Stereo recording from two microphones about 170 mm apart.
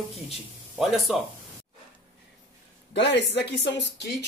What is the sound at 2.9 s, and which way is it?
Speech, 90° left.